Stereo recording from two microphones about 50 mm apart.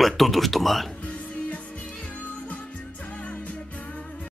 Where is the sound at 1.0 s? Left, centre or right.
Left.